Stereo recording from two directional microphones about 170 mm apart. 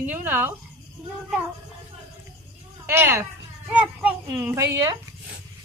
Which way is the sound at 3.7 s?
10° right (ahead or behind).